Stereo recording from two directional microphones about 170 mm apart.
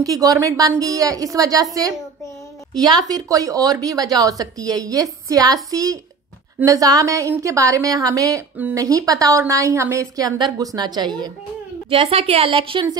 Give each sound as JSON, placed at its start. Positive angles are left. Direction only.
{"t": 0.0, "sound": "a woman's voice", "side_deg": -20}
{"t": 2.7, "sound": "a woman's voice", "side_deg": -20}
{"t": 11.9, "sound": "a woman's voice", "side_deg": -35}